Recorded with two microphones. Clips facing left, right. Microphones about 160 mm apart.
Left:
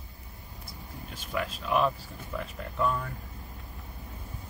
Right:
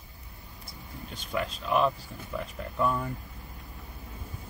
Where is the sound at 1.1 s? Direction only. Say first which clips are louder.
Right 1 dB; 5° left (ahead or behind).